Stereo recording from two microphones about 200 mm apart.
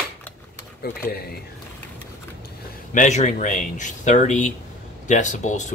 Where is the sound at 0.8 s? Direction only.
50° left (ahead or behind).